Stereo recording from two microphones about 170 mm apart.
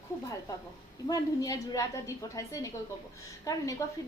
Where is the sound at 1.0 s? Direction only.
20° left (ahead or behind).